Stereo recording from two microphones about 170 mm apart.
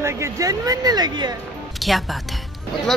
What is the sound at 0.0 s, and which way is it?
Speech, 20° right (ahead or behind).